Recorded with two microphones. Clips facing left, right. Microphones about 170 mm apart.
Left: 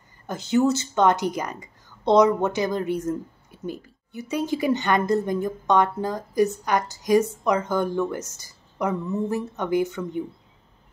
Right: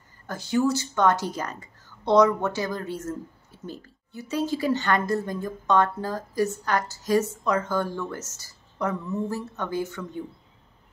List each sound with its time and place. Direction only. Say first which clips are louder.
0.3 s speech: left 3 dB; 20° left (ahead or behind)